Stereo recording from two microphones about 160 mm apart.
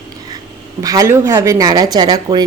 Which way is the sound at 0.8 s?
20° right (ahead or behind).